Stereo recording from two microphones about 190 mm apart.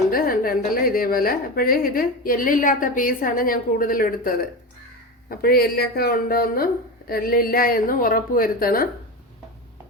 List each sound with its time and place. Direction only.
0.1 s a woman's voice: 50° left (ahead or behind)